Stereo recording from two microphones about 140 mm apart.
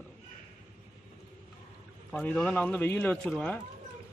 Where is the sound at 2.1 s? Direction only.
10° left (ahead or behind).